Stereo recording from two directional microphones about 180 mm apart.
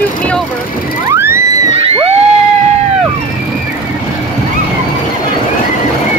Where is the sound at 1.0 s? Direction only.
15° right (ahead or behind).